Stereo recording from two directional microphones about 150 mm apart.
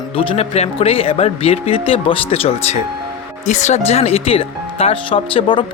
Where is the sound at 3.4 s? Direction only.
50° left (ahead or behind).